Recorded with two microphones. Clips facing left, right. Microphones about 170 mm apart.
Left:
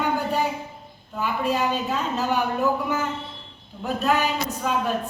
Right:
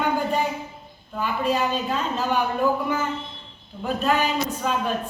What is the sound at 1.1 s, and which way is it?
A man's voice, 10° left (ahead or behind).